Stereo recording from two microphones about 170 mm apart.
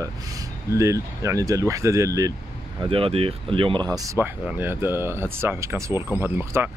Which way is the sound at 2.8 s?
35° right (ahead or behind).